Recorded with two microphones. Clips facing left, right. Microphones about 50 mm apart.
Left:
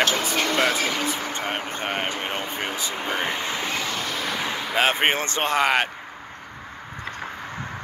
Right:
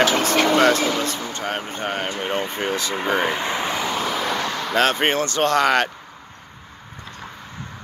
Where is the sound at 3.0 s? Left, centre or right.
Centre.